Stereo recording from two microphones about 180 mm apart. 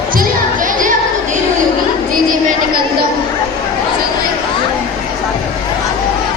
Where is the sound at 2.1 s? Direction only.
50° right (ahead or behind).